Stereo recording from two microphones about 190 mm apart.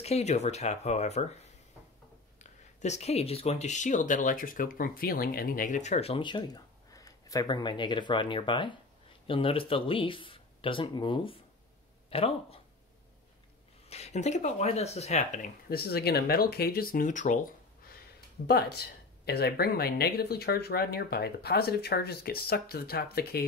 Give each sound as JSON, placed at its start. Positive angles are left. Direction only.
{"t": 0.0, "sound": "speech", "side_deg": 35}
{"t": 13.8, "sound": "speech", "side_deg": 35}
{"t": 18.5, "sound": "speech", "side_deg": 55}